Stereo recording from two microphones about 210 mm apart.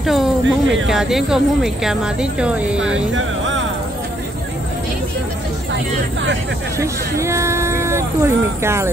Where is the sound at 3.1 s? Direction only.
65° right (ahead or behind).